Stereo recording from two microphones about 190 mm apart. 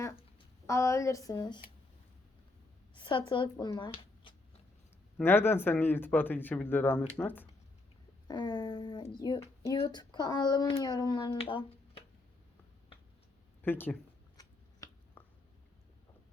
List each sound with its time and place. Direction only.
0.7 s speech: 15° left (ahead or behind)
2.9 s speech: 25° left (ahead or behind)
5.1 s speech: 10° left (ahead or behind)
8.3 s speech: 20° left (ahead or behind)
13.6 s speech: 10° left (ahead or behind)
14.3 s a sound: 15° left (ahead or behind)